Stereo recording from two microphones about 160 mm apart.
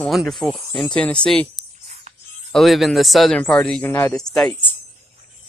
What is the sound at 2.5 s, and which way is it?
Speech, centre (ahead or behind).